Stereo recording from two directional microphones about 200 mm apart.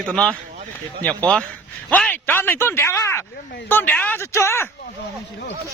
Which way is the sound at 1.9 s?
10° left (ahead or behind).